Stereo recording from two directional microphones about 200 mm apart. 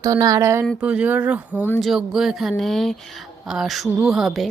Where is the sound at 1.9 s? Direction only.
Centre (ahead or behind).